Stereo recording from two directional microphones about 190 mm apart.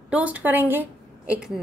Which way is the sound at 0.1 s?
5° right (ahead or behind).